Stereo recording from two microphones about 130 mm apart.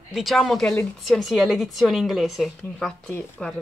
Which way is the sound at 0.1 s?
Centre (ahead or behind).